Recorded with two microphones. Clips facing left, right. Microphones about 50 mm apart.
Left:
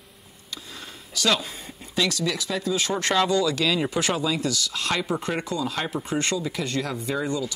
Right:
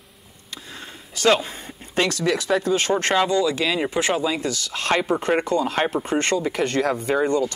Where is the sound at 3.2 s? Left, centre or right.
Right.